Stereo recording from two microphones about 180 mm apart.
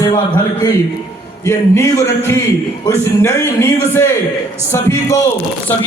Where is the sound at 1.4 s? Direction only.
15° left (ahead or behind).